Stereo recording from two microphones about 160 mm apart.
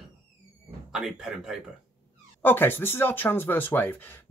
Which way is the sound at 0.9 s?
5° right (ahead or behind).